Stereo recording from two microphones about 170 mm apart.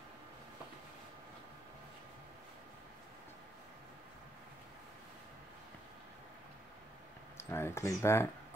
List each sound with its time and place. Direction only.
7.3 s speech: 15° left (ahead or behind)